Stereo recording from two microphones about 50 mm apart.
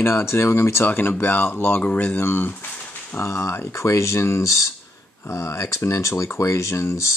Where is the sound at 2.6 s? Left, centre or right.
Left.